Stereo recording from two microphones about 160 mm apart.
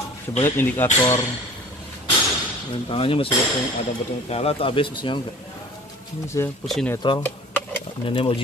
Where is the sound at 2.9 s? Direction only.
35° left (ahead or behind).